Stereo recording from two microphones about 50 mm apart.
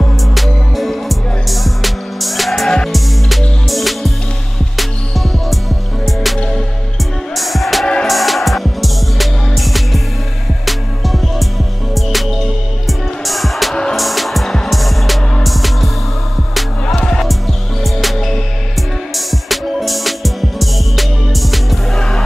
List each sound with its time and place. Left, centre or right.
0.3 s music: centre
6.0 s music: centre
7.8 s music: centre
8.1 s music: centre
16.8 s music: centre